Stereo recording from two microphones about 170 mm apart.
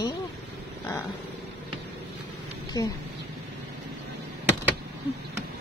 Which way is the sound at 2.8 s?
20° left (ahead or behind).